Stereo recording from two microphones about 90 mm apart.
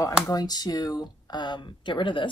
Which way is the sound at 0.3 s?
45° left (ahead or behind).